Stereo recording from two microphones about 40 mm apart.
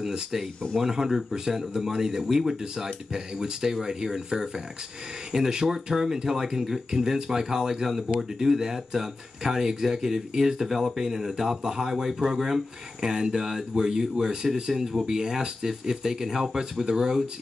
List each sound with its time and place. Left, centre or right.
0.0 s speech: centre